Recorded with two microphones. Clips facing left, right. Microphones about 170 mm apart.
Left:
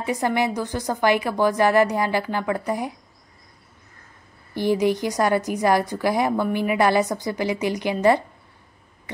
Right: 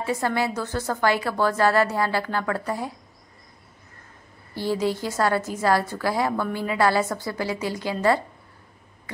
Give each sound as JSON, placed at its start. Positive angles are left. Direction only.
{"t": 0.0, "sound": "a woman's voice", "side_deg": 15}
{"t": 4.6, "sound": "a woman's voice", "side_deg": 15}